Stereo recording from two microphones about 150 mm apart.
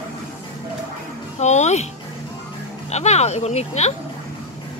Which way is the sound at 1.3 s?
50° left (ahead or behind).